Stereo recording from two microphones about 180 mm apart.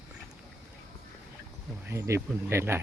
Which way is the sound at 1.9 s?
15° right (ahead or behind).